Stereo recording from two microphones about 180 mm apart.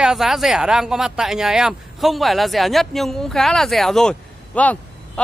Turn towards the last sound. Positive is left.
turn(degrees=5)  # may be behind; listen again after turning